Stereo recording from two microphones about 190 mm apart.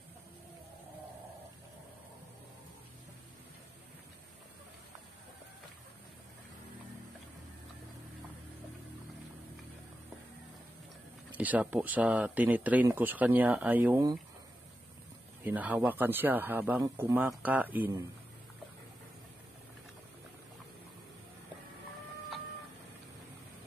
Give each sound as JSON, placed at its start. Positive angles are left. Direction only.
{"t": 11.3, "sound": "speech", "side_deg": -10}
{"t": 15.4, "sound": "speech", "side_deg": -10}